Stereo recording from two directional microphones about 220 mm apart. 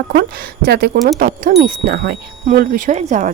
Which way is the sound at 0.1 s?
45° right (ahead or behind).